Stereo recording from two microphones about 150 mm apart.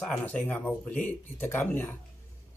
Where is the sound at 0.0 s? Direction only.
10° left (ahead or behind).